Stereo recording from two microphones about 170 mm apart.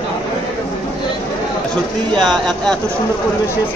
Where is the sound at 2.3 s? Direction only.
Centre (ahead or behind).